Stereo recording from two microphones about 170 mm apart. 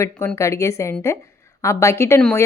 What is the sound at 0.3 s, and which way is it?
A woman's voice, 15° left (ahead or behind).